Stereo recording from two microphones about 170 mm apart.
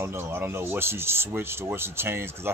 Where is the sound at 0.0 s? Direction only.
15° right (ahead or behind).